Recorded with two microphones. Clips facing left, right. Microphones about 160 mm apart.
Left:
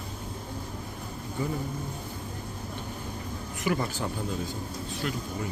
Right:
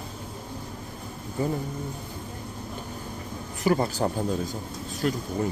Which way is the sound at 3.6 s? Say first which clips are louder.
Right 6 dB; 35° right (ahead or behind).